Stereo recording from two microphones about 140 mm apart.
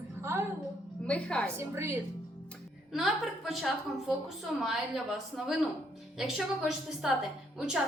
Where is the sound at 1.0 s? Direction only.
5° left (ahead or behind).